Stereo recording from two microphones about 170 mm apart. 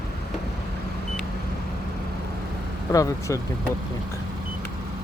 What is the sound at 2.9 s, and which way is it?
Speech, 20° left (ahead or behind).